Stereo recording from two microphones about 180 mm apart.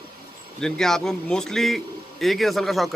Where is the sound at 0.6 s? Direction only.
5° left (ahead or behind).